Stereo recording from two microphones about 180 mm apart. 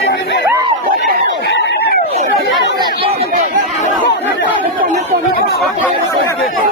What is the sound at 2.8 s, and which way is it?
Speech, 30° right (ahead or behind).